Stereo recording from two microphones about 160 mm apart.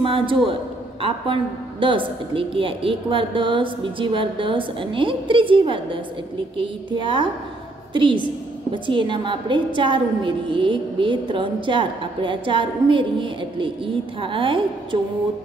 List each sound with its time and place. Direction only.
0.0 s a woman's voice: 35° right (ahead or behind)